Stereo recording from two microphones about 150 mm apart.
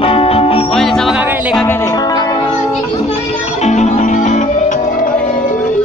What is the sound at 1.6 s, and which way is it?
Music, 15° left (ahead or behind).